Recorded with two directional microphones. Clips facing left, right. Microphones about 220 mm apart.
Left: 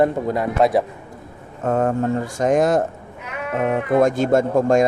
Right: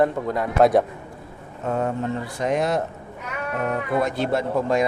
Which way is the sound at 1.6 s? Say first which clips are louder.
Left 5 dB; 50° left (ahead or behind).